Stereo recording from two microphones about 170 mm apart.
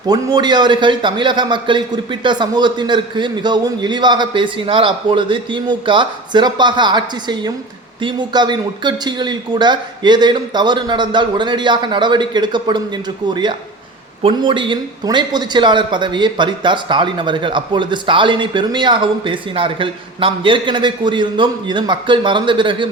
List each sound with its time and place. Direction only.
0.1 s a man's voice: 25° right (ahead or behind)